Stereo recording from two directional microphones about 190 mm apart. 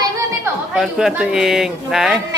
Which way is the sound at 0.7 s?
Centre (ahead or behind).